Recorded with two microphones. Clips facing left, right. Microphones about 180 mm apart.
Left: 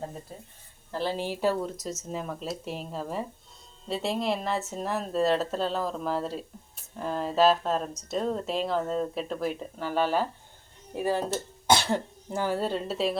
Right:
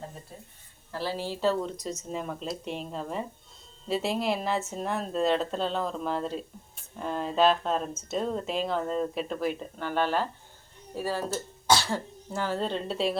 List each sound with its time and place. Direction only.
0.9 s speech: 20° left (ahead or behind)
1.8 s speech: centre (ahead or behind)
10.9 s speech: 20° left (ahead or behind); by 13.1 s centre (ahead or behind)